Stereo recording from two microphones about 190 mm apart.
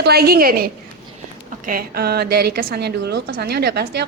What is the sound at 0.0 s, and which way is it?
A woman's voice, 55° right (ahead or behind).